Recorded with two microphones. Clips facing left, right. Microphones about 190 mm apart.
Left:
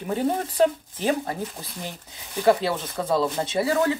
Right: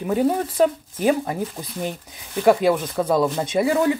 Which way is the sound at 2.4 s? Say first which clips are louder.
Right 4 dB; 15° right (ahead or behind).